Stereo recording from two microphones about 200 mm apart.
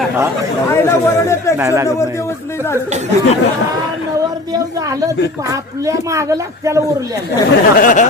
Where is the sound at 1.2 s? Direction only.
15° left (ahead or behind).